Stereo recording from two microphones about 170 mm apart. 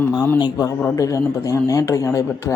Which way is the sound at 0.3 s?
25° left (ahead or behind).